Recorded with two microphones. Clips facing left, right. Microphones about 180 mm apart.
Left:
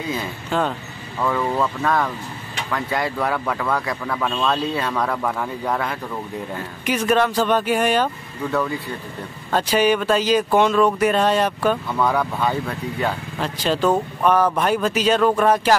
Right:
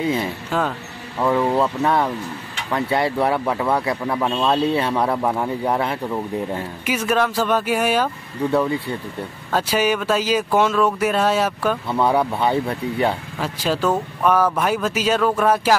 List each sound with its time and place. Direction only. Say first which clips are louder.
0.5 s speech: left 2 dB; 5° right (ahead or behind)
1.2 s speech: right 3 dB; 15° right (ahead or behind)
1.9 s a man's voice: right 2 dB; 25° right (ahead or behind)
6.9 s speech: left 2 dB; 5° right (ahead or behind)
8.5 s a man's voice: right 3 dB; 30° right (ahead or behind)
9.5 s speech: left 2 dB; 5° right (ahead or behind)
12.0 s a man's voice: right 4 dB; 25° right (ahead or behind)
13.4 s speech: left 2 dB; 5° right (ahead or behind)